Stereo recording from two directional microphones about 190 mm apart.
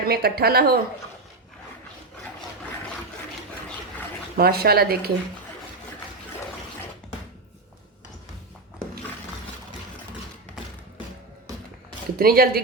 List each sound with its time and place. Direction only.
0.1 s speech: 55° right (ahead or behind)
4.4 s speech: 55° right (ahead or behind)
12.1 s speech: 50° right (ahead or behind)